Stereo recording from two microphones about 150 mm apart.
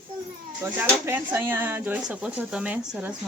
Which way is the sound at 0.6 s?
15° right (ahead or behind).